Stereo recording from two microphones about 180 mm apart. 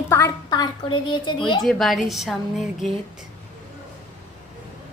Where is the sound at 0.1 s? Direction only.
20° left (ahead or behind).